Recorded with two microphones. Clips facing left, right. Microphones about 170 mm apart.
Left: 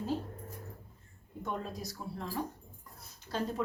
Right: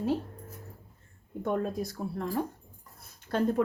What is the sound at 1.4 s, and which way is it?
Speech, 55° right (ahead or behind).